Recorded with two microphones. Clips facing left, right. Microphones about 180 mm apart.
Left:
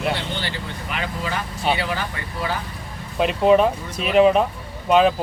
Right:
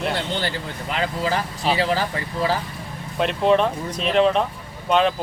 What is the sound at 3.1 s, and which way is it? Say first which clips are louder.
Speech: left 2 dB; 5° left (ahead or behind).